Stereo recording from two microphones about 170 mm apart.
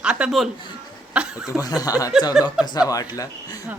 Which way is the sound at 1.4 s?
20° left (ahead or behind).